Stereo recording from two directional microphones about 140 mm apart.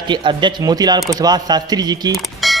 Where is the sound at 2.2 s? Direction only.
Centre (ahead or behind).